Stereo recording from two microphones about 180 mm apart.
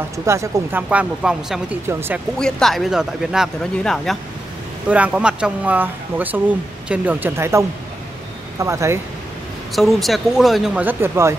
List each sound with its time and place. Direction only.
0.2 s speech: 15° right (ahead or behind)
2.3 s speech: 5° left (ahead or behind); by 9.0 s 15° right (ahead or behind)
9.8 s speech: centre (ahead or behind)